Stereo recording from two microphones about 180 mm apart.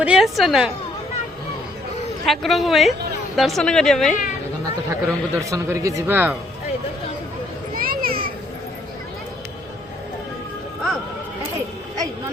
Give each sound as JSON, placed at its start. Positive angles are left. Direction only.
{"t": 0.0, "sound": "a woman's voice", "side_deg": -5}
{"t": 2.2, "sound": "a woman's voice", "side_deg": 0}
{"t": 4.6, "sound": "speech", "side_deg": -15}
{"t": 7.8, "sound": "children playing", "side_deg": -55}